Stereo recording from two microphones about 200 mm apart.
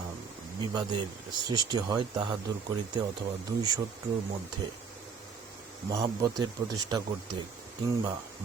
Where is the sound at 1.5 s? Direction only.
20° right (ahead or behind).